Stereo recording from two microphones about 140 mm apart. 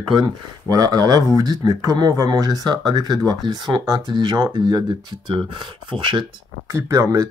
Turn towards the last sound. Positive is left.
turn(degrees=-25)  # may be behind; listen again after turning